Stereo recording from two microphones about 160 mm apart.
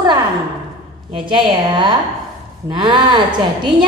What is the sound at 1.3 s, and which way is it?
A woman's voice, 30° right (ahead or behind).